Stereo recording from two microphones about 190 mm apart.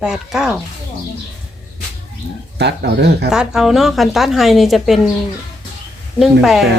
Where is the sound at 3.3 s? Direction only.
5° right (ahead or behind).